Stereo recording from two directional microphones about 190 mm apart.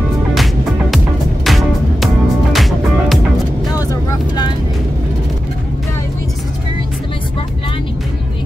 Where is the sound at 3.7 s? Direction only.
15° left (ahead or behind).